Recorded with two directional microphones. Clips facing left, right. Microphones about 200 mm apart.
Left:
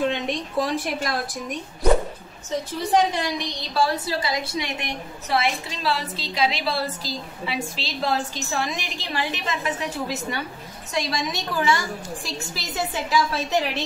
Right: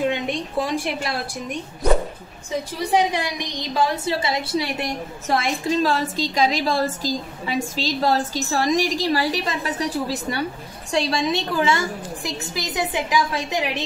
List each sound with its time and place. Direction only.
0.0 s a sound: 10° right (ahead or behind)
2.5 s a woman's voice: 10° right (ahead or behind); by 4.6 s 30° right (ahead or behind)
5.3 s a woman's voice: 45° right (ahead or behind); by 13.8 s 15° right (ahead or behind)